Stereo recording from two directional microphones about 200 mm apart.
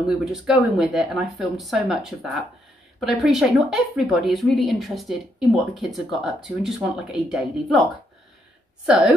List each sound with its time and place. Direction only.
0.0 s speech: centre (ahead or behind)
8.8 s speech: 5° right (ahead or behind)